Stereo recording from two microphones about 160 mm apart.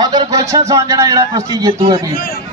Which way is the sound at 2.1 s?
70° left (ahead or behind).